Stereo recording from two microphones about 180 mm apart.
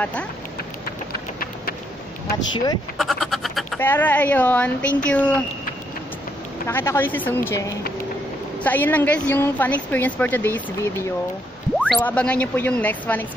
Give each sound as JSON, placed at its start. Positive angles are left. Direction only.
{"t": 0.0, "sound": "a woman's voice", "side_deg": 5}
{"t": 2.3, "sound": "speech", "side_deg": 20}
{"t": 3.0, "sound": "frog", "side_deg": 0}
{"t": 3.8, "sound": "a woman's voice", "side_deg": 10}
{"t": 6.7, "sound": "a woman's voice", "side_deg": 10}